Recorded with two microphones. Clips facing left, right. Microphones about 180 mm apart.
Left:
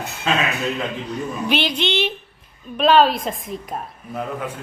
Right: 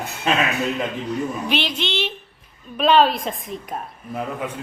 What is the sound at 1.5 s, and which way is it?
Speech, centre (ahead or behind).